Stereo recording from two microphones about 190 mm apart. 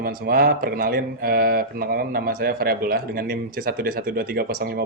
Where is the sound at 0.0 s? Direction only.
50° right (ahead or behind).